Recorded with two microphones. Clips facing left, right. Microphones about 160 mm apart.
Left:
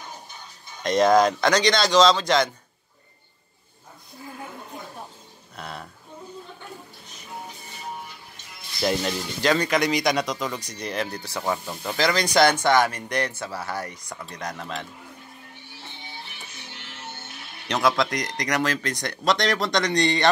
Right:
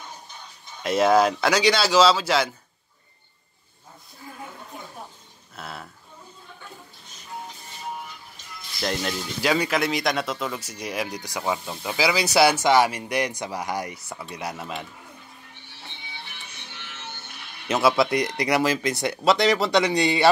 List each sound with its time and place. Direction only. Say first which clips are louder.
0.8 s speech: left 1 dB; 5° right (ahead or behind)
5.6 s a sound: left 1 dB; centre (ahead or behind)
8.8 s speech: left 3 dB; centre (ahead or behind)
17.6 s speech: right 2 dB; 5° right (ahead or behind)